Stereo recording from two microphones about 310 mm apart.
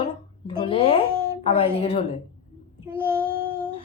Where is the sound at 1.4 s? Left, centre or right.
Centre.